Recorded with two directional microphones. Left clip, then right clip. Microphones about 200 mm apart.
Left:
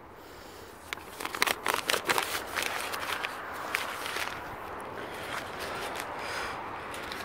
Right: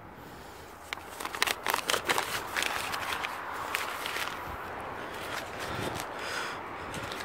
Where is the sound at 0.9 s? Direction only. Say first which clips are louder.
Even; 20° left (ahead or behind).